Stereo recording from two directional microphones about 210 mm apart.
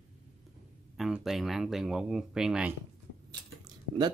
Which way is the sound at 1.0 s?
Centre (ahead or behind).